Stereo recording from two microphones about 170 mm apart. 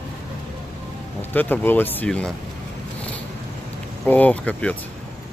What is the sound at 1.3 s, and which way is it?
Speech, 10° left (ahead or behind).